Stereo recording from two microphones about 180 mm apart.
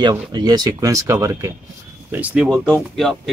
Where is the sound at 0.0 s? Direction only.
25° right (ahead or behind).